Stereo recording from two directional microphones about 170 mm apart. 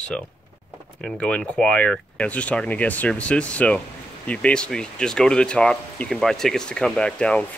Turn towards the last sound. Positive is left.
turn(degrees=5)  # may be behind; listen again after turning